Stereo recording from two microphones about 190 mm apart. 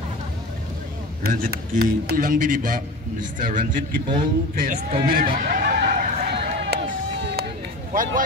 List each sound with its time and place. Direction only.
1.2 s speech: 50° right (ahead or behind)
7.9 s speech: 45° right (ahead or behind)